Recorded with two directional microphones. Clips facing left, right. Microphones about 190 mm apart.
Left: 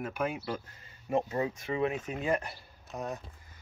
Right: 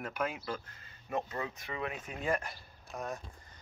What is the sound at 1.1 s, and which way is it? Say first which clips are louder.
Speech: left 6 dB; 25° left (ahead or behind).